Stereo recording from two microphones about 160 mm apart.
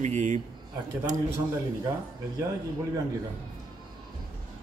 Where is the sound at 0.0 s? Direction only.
50° right (ahead or behind).